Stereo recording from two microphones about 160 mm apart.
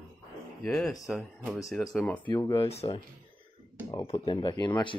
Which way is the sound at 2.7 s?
40° left (ahead or behind).